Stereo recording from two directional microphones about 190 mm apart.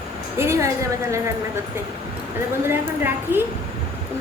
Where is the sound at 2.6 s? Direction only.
10° right (ahead or behind).